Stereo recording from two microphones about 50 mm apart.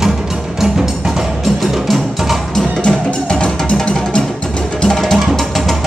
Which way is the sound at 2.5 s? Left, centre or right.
Centre.